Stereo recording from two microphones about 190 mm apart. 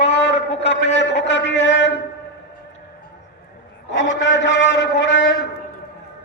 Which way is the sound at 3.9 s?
70° left (ahead or behind).